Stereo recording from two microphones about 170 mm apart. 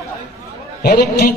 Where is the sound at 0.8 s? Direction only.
65° left (ahead or behind).